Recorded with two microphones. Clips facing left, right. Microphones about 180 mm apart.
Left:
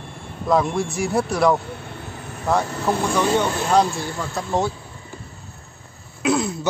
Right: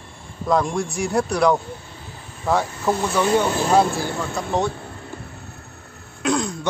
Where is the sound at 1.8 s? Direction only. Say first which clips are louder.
Left 5 dB; 70° left (ahead or behind).